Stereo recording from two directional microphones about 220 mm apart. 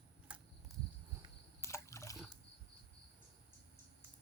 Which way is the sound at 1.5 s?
10° left (ahead or behind).